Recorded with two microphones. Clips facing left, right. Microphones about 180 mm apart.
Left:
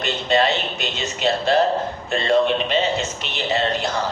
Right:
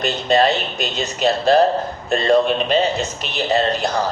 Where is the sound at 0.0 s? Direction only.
40° right (ahead or behind).